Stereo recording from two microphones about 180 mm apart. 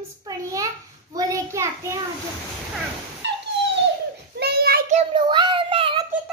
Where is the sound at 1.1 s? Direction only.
20° right (ahead or behind).